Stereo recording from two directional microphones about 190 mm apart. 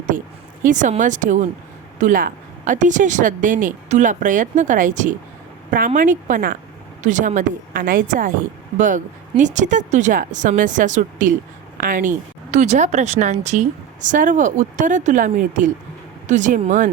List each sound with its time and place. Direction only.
0.6 s speech: 40° right (ahead or behind)
9.4 s speech: 40° right (ahead or behind)